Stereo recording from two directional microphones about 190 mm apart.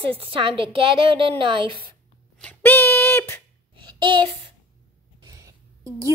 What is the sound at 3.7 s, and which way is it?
Child singing, 25° right (ahead or behind).